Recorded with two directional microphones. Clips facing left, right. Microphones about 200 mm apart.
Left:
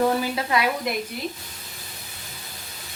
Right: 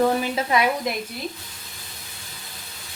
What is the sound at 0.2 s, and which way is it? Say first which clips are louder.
Speech: right 1 dB; 25° right (ahead or behind).